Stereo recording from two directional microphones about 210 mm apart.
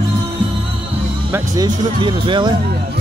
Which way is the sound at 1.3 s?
15° right (ahead or behind).